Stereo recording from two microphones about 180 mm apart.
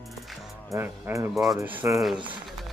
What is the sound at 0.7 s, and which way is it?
Speech, 15° right (ahead or behind).